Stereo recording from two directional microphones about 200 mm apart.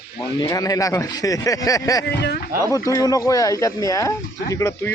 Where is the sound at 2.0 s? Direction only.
55° left (ahead or behind).